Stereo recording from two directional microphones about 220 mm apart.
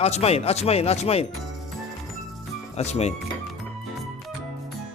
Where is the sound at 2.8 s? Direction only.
30° left (ahead or behind).